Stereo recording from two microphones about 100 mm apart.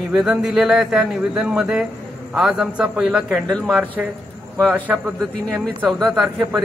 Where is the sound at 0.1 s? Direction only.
5° right (ahead or behind).